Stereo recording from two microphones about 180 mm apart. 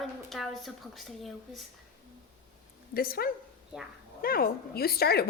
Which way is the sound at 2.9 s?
55° left (ahead or behind).